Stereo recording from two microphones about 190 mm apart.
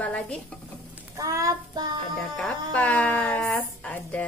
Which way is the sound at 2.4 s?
10° left (ahead or behind).